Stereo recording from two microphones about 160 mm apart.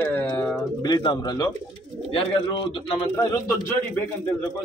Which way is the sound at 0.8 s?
25° left (ahead or behind).